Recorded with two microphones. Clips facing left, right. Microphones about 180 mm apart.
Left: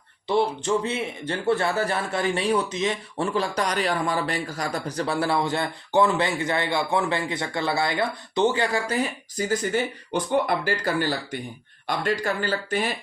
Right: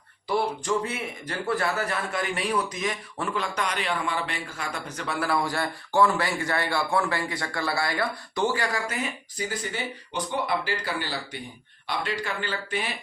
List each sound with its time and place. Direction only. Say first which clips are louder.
0.3 s speech: left 3 dB; 25° left (ahead or behind)
9.5 s speech: left 11 dB; 45° left (ahead or behind)